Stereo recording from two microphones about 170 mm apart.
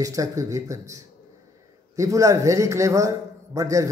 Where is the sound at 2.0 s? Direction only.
20° right (ahead or behind).